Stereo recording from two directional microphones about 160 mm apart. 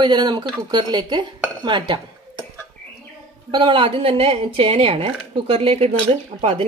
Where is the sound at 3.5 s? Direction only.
30° right (ahead or behind).